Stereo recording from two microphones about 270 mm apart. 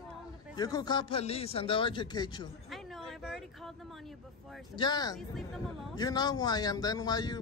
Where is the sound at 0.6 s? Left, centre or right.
Centre.